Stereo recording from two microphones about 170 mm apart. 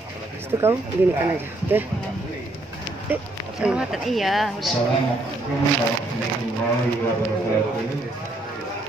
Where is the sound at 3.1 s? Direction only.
10° right (ahead or behind).